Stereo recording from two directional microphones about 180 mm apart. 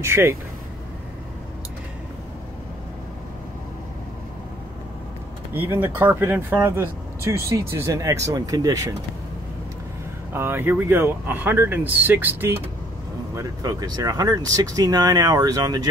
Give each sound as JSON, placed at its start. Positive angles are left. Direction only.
{"t": 0.0, "sound": "speech", "side_deg": -15}
{"t": 5.5, "sound": "speech", "side_deg": -10}
{"t": 10.3, "sound": "speech", "side_deg": -10}